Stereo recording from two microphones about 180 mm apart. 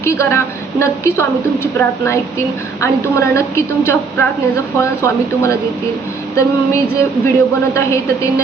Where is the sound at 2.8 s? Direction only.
15° left (ahead or behind).